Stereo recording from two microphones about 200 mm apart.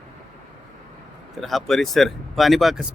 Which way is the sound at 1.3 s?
Centre (ahead or behind).